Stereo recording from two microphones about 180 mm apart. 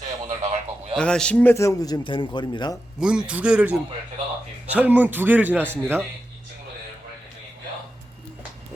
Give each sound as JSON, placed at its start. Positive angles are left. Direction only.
{"t": 0.3, "sound": "a sound", "side_deg": -35}
{"t": 0.9, "sound": "a man's voice", "side_deg": 5}
{"t": 3.0, "sound": "a man's voice", "side_deg": -5}